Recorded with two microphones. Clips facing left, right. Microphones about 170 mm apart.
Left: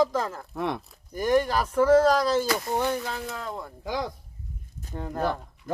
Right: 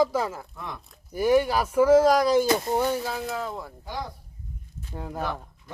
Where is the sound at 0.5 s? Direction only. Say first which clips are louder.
Left 9 dB; 75° left (ahead or behind).